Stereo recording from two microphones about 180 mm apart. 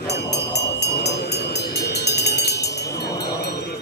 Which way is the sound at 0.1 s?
70° left (ahead or behind).